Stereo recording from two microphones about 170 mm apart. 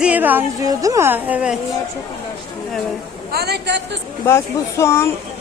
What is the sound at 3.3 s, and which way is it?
Speech, 70° right (ahead or behind).